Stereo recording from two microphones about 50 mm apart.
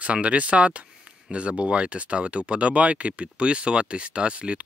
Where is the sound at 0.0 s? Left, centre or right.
Right.